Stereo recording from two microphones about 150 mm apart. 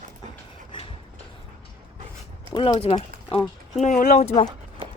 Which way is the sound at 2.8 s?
45° left (ahead or behind).